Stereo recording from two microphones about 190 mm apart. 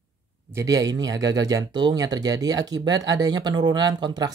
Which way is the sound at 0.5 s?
15° right (ahead or behind).